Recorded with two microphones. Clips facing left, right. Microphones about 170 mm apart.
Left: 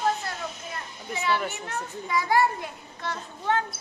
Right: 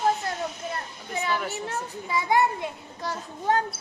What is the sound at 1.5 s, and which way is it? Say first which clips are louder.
A child's voice: right 2 dB; 30° right (ahead or behind).